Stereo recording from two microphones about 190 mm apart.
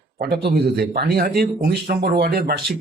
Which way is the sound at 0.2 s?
55° right (ahead or behind).